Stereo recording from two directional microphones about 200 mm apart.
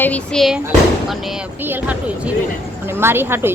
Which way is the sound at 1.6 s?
10° right (ahead or behind).